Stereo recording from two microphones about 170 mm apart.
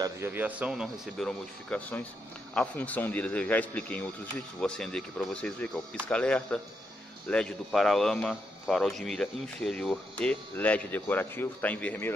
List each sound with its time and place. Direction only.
0.0 s speech: 15° right (ahead or behind); by 12.1 s 10° left (ahead or behind)